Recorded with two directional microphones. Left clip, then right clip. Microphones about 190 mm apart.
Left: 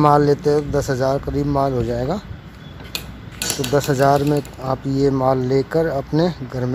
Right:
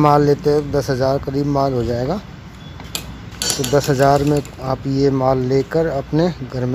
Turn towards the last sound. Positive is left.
turn(degrees=5)  # may be behind; listen again after turning